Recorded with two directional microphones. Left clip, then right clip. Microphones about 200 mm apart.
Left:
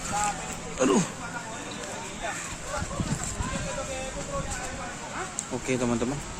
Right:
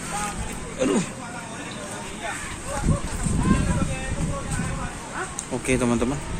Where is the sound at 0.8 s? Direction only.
35° left (ahead or behind).